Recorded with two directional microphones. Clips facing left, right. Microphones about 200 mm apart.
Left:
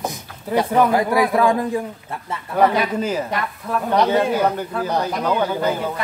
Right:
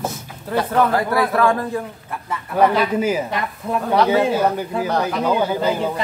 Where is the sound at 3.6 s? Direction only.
25° right (ahead or behind).